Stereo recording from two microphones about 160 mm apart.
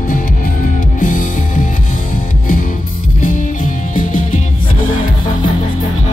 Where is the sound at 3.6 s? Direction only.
60° left (ahead or behind).